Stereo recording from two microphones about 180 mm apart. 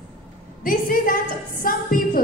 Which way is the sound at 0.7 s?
50° left (ahead or behind).